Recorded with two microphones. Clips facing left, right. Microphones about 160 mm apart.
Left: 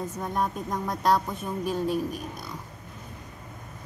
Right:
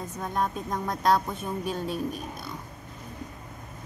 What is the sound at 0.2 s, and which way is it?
Speech, 10° left (ahead or behind).